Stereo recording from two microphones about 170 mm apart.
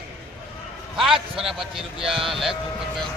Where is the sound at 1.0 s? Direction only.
30° right (ahead or behind).